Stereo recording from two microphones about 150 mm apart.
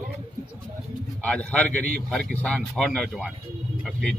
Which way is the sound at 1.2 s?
10° left (ahead or behind).